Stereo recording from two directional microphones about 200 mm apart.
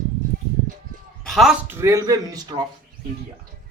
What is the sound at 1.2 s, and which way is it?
A man's voice, centre (ahead or behind).